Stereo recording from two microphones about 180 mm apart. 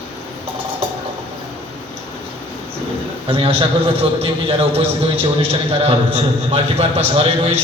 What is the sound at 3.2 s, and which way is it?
A man's voice, 30° right (ahead or behind).